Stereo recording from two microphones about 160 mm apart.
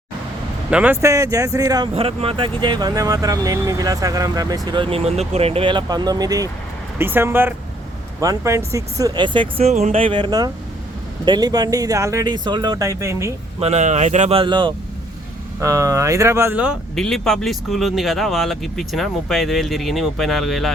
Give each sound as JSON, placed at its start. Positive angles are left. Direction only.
{"t": 0.7, "sound": "speech", "side_deg": -5}
{"t": 1.0, "sound": "speech", "side_deg": -20}
{"t": 2.0, "sound": "speech", "side_deg": -35}
{"t": 13.6, "sound": "speech", "side_deg": -45}
{"t": 15.6, "sound": "speech", "side_deg": -20}
{"t": 16.9, "sound": "speech", "side_deg": 0}